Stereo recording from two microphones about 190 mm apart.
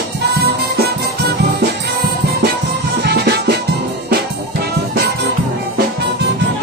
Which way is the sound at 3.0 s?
60° right (ahead or behind).